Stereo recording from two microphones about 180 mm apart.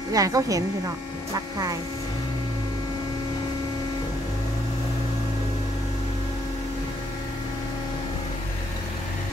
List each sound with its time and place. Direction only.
0.1 s a woman's voice: 20° right (ahead or behind)